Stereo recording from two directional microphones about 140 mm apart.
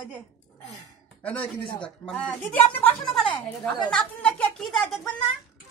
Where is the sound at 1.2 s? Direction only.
10° left (ahead or behind).